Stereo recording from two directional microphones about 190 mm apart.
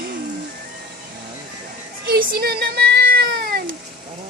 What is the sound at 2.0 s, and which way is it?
Cat, 55° right (ahead or behind).